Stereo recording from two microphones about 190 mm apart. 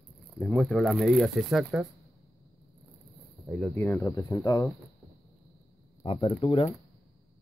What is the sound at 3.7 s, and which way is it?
Speech, 10° left (ahead or behind).